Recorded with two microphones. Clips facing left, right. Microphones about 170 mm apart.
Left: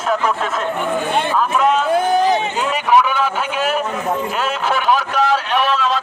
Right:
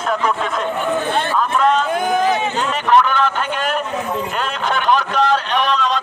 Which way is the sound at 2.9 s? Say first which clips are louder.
Right 1 dB; 10° left (ahead or behind).